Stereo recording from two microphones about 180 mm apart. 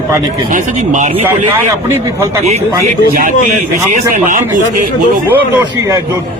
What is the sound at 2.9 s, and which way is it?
Speech, 50° right (ahead or behind).